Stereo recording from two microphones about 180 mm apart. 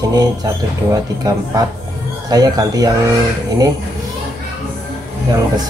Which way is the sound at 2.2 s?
20° right (ahead or behind).